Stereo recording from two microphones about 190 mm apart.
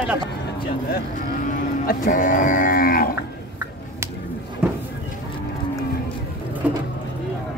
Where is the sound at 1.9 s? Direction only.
45° left (ahead or behind).